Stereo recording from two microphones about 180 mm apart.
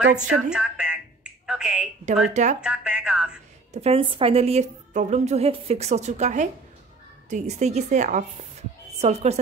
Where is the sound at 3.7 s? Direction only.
35° right (ahead or behind).